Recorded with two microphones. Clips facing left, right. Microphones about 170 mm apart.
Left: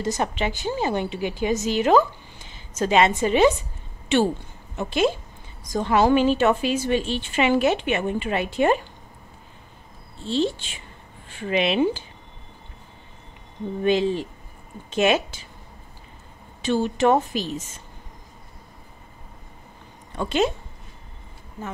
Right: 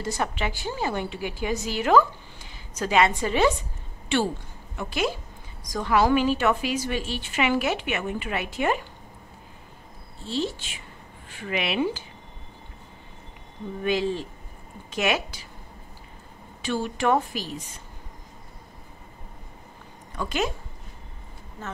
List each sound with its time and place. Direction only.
0.0 s a woman's voice: 20° left (ahead or behind)
10.2 s a woman's voice: 25° left (ahead or behind)
13.8 s a woman's voice: 20° left (ahead or behind)
16.6 s a woman's voice: 25° left (ahead or behind)
20.2 s a woman's voice: 25° left (ahead or behind)